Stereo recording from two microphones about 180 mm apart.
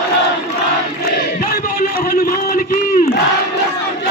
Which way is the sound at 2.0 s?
55° left (ahead or behind).